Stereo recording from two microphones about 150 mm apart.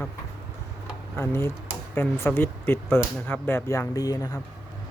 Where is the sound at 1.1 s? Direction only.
15° left (ahead or behind).